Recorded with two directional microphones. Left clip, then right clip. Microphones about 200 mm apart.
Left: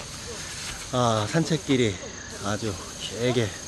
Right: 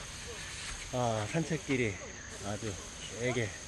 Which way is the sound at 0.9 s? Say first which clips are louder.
Left 10 dB; 25° left (ahead or behind).